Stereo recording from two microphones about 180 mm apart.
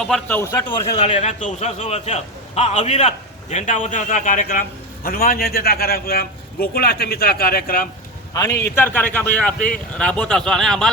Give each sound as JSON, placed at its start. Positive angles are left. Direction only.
{"t": 0.0, "sound": "speech", "side_deg": 5}
{"t": 0.9, "sound": "a man's voice", "side_deg": 40}
{"t": 8.3, "sound": "a man's voice", "side_deg": 20}